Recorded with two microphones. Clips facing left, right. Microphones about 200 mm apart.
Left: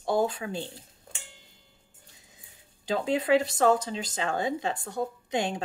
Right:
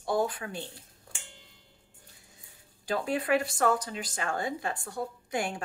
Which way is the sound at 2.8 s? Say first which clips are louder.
Left 3 dB; 20° left (ahead or behind).